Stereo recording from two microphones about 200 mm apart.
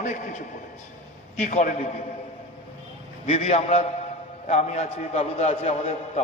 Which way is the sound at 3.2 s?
35° left (ahead or behind).